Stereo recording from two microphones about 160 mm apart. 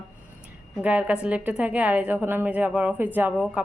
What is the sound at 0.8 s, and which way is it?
Speech, 10° right (ahead or behind).